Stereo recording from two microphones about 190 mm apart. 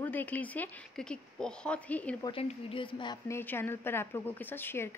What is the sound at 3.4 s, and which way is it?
Speech, 10° left (ahead or behind).